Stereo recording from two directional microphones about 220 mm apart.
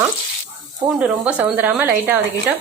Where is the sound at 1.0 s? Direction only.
5° right (ahead or behind).